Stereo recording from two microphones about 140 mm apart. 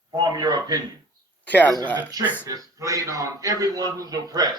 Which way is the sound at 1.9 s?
30° right (ahead or behind).